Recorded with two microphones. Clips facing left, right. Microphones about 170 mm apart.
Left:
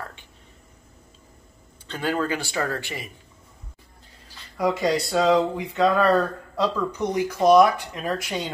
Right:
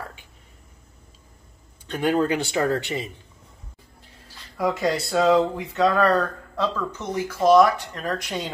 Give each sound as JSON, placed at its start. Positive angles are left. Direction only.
{"t": 1.9, "sound": "speech", "side_deg": -15}
{"t": 4.6, "sound": "speech", "side_deg": 0}